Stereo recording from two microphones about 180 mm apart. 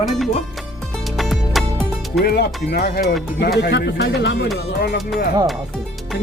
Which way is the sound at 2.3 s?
60° left (ahead or behind).